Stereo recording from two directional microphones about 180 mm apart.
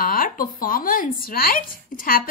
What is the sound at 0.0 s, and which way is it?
Speech, 55° left (ahead or behind).